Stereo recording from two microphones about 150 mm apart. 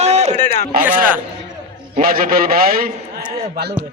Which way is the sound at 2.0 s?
75° right (ahead or behind).